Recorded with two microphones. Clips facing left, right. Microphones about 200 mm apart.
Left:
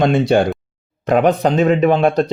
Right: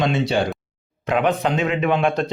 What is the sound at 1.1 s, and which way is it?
Speech, 40° left (ahead or behind).